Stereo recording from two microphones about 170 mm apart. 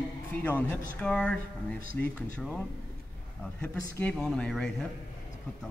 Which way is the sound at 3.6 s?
10° left (ahead or behind).